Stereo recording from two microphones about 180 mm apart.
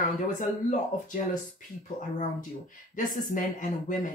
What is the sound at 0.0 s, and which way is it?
Speech, 45° left (ahead or behind).